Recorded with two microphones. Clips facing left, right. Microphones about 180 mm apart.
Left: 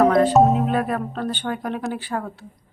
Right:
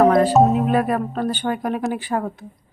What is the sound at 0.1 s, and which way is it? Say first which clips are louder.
A woman's voice: right 1 dB; 5° right (ahead or behind).